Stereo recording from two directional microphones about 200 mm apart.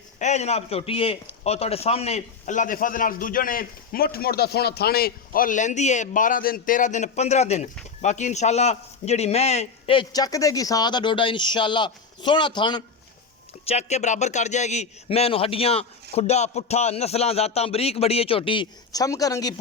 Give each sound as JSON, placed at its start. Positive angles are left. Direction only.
{"t": 0.2, "sound": "a man's voice", "side_deg": 35}
{"t": 13.7, "sound": "a man's voice", "side_deg": 35}